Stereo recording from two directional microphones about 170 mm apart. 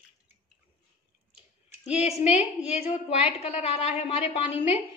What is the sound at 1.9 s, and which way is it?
A woman's voice, 40° left (ahead or behind).